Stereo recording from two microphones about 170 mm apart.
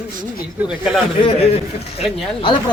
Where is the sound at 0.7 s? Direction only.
Centre (ahead or behind).